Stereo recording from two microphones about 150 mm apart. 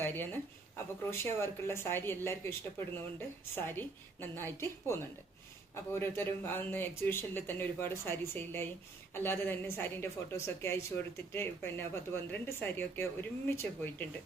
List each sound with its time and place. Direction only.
0.0 s speech: 15° left (ahead or behind)